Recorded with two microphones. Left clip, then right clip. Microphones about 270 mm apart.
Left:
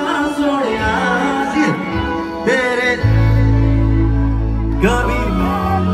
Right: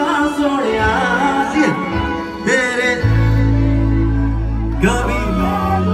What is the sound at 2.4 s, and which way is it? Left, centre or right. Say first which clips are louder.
Music: even; left.